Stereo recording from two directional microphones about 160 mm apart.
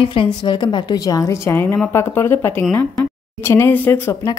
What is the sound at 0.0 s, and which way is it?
A woman's voice, 30° left (ahead or behind).